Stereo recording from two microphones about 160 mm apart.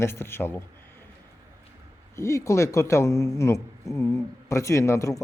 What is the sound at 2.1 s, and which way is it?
A man's voice, 20° left (ahead or behind).